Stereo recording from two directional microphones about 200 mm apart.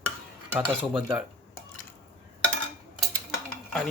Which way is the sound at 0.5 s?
10° right (ahead or behind).